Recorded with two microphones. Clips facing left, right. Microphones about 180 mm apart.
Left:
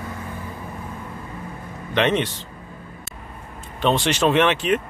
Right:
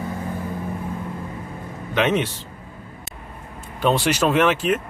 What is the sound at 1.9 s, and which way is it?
Speech, 5° right (ahead or behind).